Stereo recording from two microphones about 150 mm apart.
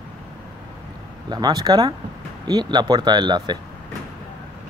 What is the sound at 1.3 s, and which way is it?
A man's voice, 25° right (ahead or behind).